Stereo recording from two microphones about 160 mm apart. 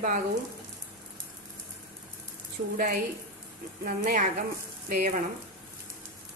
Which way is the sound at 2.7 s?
60° right (ahead or behind).